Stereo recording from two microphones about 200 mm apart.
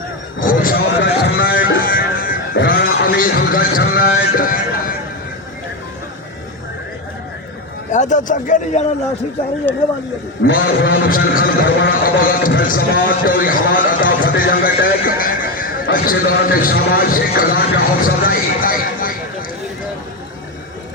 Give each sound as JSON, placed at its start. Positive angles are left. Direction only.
{"t": 0.3, "sound": "a sound", "side_deg": 45}
{"t": 1.4, "sound": "music", "side_deg": 50}
{"t": 3.2, "sound": "a man's voice", "side_deg": 45}
{"t": 7.9, "sound": "speech", "side_deg": 40}
{"t": 9.7, "sound": "speech", "side_deg": 10}
{"t": 10.4, "sound": "a man's voice", "side_deg": 45}